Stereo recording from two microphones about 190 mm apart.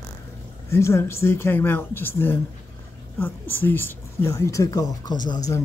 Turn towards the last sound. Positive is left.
turn(degrees=20)  # may be behind; listen again after turning